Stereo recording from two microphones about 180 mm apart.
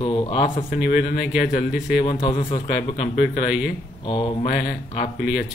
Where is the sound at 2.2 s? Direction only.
25° left (ahead or behind).